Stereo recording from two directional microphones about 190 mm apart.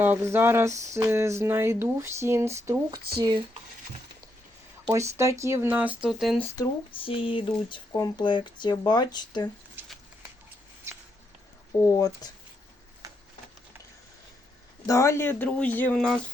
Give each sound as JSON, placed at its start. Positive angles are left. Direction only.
{"t": 0.0, "sound": "speech", "side_deg": -10}
{"t": 3.2, "sound": "speech", "side_deg": -25}
{"t": 4.9, "sound": "speech", "side_deg": -15}
{"t": 6.6, "sound": "speech", "side_deg": 25}
{"t": 9.8, "sound": "a sound", "side_deg": -10}
{"t": 11.8, "sound": "speech", "side_deg": 15}
{"t": 14.8, "sound": "speech", "side_deg": 15}